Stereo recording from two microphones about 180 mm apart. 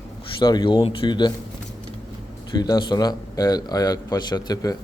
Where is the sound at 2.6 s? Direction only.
25° left (ahead or behind).